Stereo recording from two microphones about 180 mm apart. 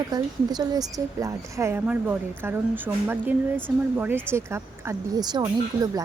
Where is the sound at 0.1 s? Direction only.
20° right (ahead or behind).